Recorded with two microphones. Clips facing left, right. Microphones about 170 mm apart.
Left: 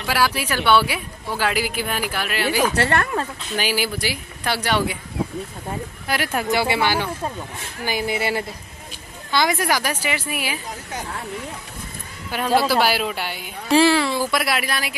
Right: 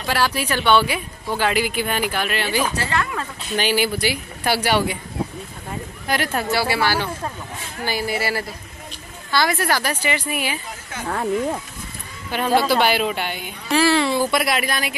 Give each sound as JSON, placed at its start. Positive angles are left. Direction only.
{"t": 0.0, "sound": "a woman's voice", "side_deg": 10}
{"t": 2.7, "sound": "a woman's voice", "side_deg": 65}
{"t": 3.5, "sound": "a woman's voice", "side_deg": 5}
{"t": 6.0, "sound": "speech", "side_deg": 10}
{"t": 12.3, "sound": "a woman's voice", "side_deg": 5}